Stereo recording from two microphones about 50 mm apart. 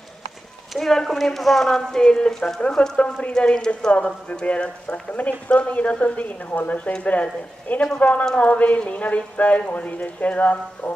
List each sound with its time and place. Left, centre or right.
0.7 s speech: centre; by 10.9 s left